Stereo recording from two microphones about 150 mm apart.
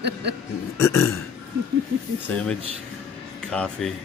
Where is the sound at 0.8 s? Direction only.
15° left (ahead or behind).